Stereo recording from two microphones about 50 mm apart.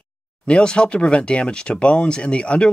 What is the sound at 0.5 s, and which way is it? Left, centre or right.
Speech, left.